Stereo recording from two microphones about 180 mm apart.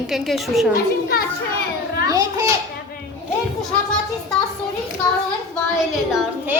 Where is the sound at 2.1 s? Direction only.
20° right (ahead or behind).